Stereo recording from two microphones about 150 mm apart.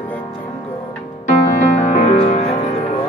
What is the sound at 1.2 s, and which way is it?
Music, 55° left (ahead or behind).